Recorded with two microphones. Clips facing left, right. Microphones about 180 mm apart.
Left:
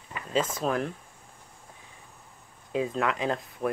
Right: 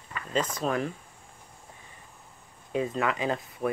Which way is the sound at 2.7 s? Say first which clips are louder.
Even; centre (ahead or behind).